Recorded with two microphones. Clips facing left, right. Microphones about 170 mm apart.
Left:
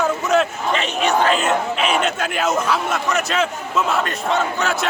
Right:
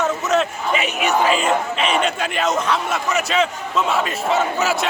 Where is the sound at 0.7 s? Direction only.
10° right (ahead or behind).